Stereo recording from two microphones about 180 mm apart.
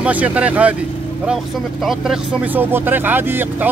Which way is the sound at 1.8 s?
Centre (ahead or behind).